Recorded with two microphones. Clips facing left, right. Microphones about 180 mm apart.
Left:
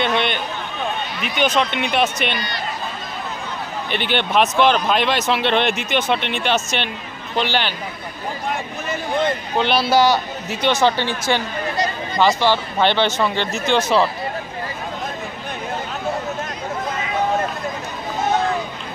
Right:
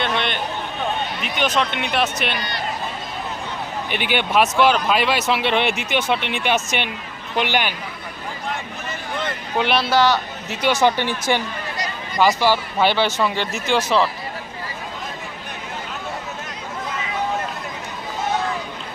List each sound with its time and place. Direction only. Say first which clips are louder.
0.0 s a sound: left 3 dB; centre (ahead or behind)
1.2 s speech: left 3 dB; centre (ahead or behind)
3.9 s speech: left 1 dB; 10° right (ahead or behind)
9.8 s a man's voice: left 2 dB; 10° left (ahead or behind)
10.8 s speech: even; 15° right (ahead or behind)